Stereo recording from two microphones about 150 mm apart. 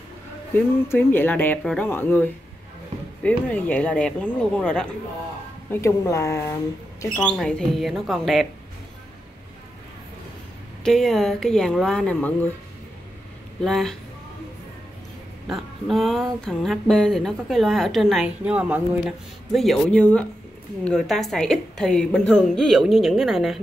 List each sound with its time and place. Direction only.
0.6 s speech: 15° left (ahead or behind)
5.7 s speech: 20° left (ahead or behind)
7.2 s speech: 5° left (ahead or behind)
10.8 s speech: centre (ahead or behind)
13.6 s speech: 5° left (ahead or behind)
15.4 s speech: centre (ahead or behind)